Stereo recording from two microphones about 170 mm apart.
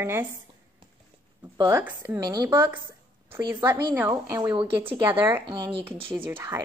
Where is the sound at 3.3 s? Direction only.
25° right (ahead or behind).